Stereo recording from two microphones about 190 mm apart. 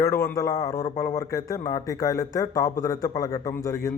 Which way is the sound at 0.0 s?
15° left (ahead or behind).